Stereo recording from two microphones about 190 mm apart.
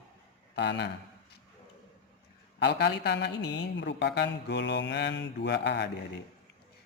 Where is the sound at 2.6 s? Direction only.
60° left (ahead or behind).